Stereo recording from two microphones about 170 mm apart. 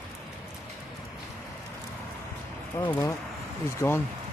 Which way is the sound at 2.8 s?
15° left (ahead or behind).